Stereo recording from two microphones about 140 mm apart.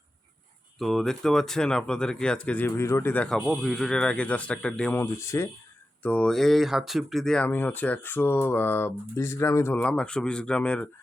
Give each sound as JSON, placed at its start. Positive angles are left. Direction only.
{"t": 0.8, "sound": "speech", "side_deg": 0}
{"t": 4.9, "sound": "speech", "side_deg": 20}